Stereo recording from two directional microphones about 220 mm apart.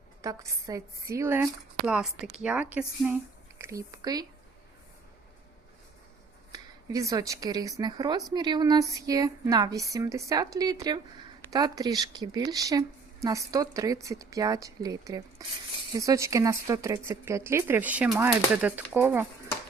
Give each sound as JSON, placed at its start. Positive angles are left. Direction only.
{"t": 0.2, "sound": "speech", "side_deg": -15}
{"t": 1.9, "sound": "a woman's voice", "side_deg": 0}
{"t": 6.5, "sound": "speech", "side_deg": -15}